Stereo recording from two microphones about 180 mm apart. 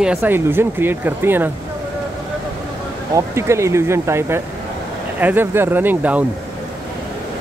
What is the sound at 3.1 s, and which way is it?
Speech, 15° right (ahead or behind).